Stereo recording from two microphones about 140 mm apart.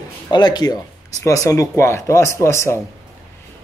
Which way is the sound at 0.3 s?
30° left (ahead or behind).